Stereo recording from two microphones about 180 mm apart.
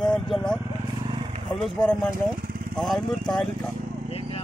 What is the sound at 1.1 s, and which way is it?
Vehicle, 30° right (ahead or behind).